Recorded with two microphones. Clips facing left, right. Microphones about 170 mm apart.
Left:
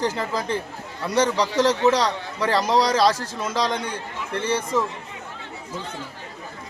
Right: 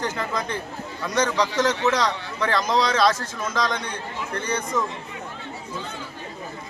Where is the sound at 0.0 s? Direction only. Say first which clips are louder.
Left 2 dB; 30° left (ahead or behind).